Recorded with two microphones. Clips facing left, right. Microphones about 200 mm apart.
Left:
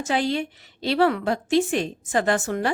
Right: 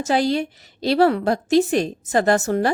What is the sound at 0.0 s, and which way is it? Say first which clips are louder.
A woman's voice: right 4 dB; 40° right (ahead or behind).